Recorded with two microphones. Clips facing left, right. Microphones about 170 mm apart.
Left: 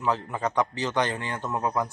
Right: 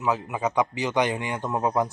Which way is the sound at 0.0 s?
5° right (ahead or behind).